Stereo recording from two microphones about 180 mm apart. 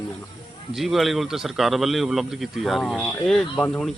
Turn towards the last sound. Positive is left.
turn(degrees=5)  # may be behind; listen again after turning